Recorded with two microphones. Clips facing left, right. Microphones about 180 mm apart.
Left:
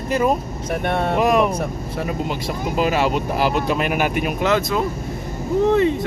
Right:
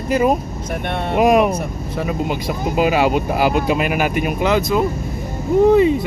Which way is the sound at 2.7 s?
5° right (ahead or behind).